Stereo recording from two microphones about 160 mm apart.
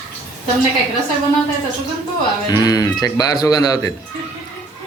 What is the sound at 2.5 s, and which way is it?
Speech, 25° left (ahead or behind).